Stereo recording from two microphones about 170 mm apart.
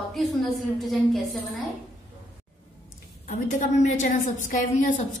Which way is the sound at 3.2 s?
45° left (ahead or behind).